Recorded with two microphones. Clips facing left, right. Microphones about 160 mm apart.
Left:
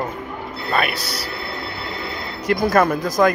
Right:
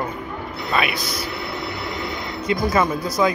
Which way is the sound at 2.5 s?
60° left (ahead or behind).